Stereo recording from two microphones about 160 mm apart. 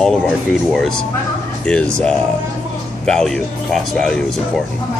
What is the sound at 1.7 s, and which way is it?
Speech, 5° left (ahead or behind).